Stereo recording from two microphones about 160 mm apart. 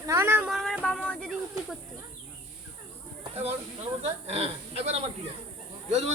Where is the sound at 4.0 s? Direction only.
40° right (ahead or behind).